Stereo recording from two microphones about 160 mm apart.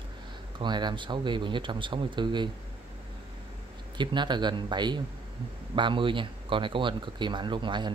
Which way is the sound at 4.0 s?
30° right (ahead or behind).